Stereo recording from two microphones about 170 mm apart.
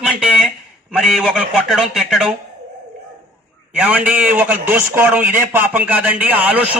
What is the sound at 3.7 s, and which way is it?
A man's voice, 10° right (ahead or behind).